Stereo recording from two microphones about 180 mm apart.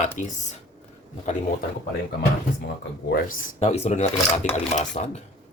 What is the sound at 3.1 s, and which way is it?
Speech, 50° left (ahead or behind).